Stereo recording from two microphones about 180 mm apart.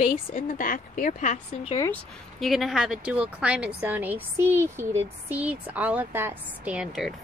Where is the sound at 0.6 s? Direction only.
50° left (ahead or behind).